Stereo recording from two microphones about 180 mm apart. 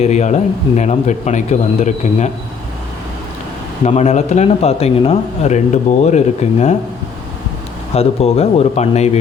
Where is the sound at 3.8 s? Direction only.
40° left (ahead or behind).